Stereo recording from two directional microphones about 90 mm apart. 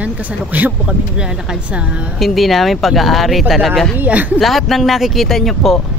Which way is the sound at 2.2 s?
Centre (ahead or behind).